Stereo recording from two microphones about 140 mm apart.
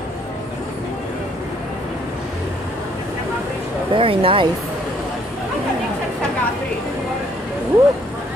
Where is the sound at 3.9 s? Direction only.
40° right (ahead or behind).